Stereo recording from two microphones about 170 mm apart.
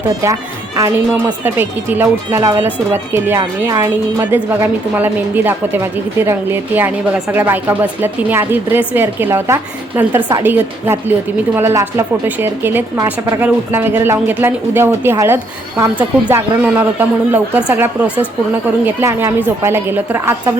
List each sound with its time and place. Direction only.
0.1 s speech: 20° right (ahead or behind)
1.5 s a woman's voice: 10° right (ahead or behind)